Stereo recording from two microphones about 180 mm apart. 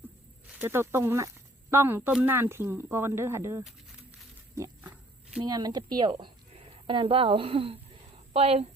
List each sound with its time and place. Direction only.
0.6 s speech: 15° right (ahead or behind)
4.5 s a sound: 15° right (ahead or behind)
5.5 s a woman's voice: 20° right (ahead or behind)